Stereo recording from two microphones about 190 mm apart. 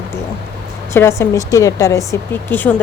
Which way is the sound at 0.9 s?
15° left (ahead or behind).